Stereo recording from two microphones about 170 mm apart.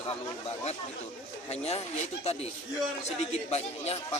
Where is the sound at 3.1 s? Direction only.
40° left (ahead or behind).